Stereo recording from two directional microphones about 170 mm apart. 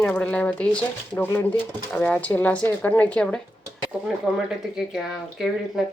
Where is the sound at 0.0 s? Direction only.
5° left (ahead or behind).